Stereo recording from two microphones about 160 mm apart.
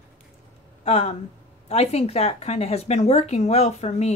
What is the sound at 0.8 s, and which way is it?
Speech, 40° left (ahead or behind).